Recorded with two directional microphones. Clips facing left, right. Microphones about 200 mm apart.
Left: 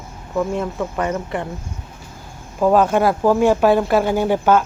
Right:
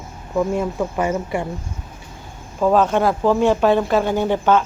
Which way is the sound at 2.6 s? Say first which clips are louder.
Left 1 dB; 10° left (ahead or behind).